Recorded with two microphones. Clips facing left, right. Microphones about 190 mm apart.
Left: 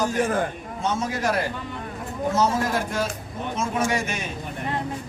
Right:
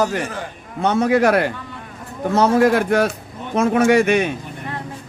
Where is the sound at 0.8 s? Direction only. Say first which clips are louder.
Right 10 dB; 65° right (ahead or behind).